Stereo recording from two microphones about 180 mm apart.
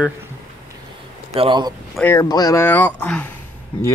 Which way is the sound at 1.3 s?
30° right (ahead or behind).